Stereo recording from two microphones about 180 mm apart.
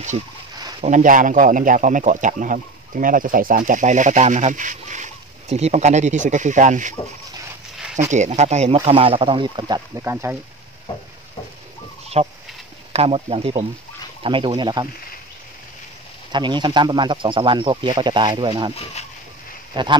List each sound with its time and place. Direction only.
0.7 s speech: 40° right (ahead or behind)
8.1 s speech: 40° right (ahead or behind)
10.0 s speech: 15° right (ahead or behind)
12.2 s speech: 35° right (ahead or behind)
16.3 s speech: 25° right (ahead or behind)
19.7 s speech: 25° right (ahead or behind)